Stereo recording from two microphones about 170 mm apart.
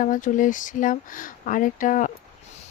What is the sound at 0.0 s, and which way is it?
Speech, 50° left (ahead or behind).